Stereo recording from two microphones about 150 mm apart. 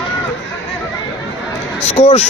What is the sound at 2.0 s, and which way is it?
Speech, 40° left (ahead or behind).